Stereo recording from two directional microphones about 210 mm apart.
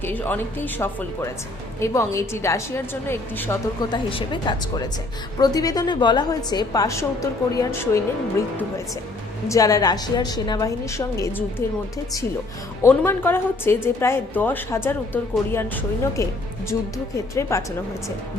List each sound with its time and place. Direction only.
0.0 s a woman's voice: 10° left (ahead or behind)
3.8 s a woman's voice: 25° left (ahead or behind)
9.5 s a woman's voice: 15° left (ahead or behind)
12.8 s a woman's voice: 10° left (ahead or behind)
17.5 s a woman's voice: 15° left (ahead or behind)